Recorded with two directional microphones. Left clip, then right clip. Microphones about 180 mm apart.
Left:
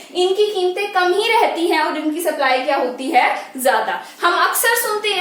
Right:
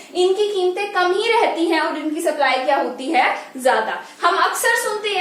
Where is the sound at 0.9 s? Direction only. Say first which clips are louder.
Left 2 dB; 15° left (ahead or behind).